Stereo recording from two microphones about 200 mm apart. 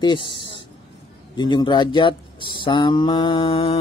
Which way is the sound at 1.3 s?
20° left (ahead or behind).